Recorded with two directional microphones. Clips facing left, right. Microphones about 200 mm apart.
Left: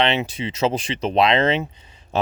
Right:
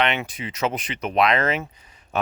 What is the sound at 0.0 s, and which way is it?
Speech, 25° left (ahead or behind).